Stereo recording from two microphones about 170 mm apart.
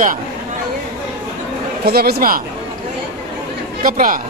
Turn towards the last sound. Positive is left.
turn(degrees=-55)  # may be behind; listen again after turning